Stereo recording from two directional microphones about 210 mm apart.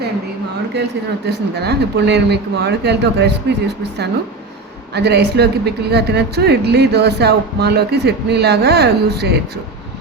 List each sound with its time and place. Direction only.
1.3 s a woman's voice: 50° right (ahead or behind)
4.9 s a woman's voice: 50° right (ahead or behind)